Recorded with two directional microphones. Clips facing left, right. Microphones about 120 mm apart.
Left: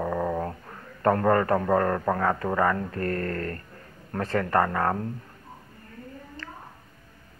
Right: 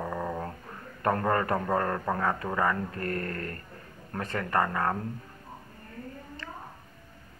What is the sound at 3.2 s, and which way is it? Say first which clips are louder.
Speech: left 5 dB; 45° left (ahead or behind).